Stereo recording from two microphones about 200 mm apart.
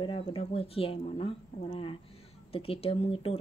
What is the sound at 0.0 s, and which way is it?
Speech, 25° left (ahead or behind).